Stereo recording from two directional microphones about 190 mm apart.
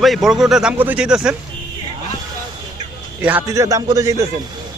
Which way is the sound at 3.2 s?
10° right (ahead or behind).